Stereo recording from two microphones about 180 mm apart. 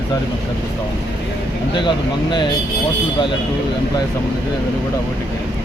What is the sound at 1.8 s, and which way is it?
Speech, 25° left (ahead or behind).